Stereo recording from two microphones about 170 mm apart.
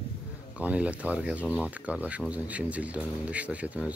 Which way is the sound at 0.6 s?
10° right (ahead or behind).